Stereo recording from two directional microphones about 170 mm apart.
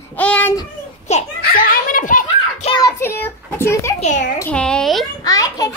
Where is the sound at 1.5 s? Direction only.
55° left (ahead or behind).